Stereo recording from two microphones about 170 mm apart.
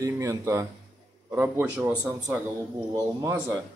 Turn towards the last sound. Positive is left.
turn(degrees=-20)  # may be behind; listen again after turning